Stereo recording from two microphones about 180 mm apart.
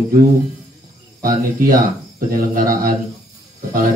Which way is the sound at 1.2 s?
50° right (ahead or behind).